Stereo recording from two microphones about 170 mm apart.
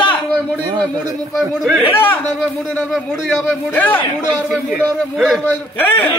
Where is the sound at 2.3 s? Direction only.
5° left (ahead or behind).